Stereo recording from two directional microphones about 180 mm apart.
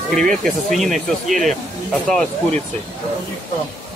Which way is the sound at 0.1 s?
Centre (ahead or behind).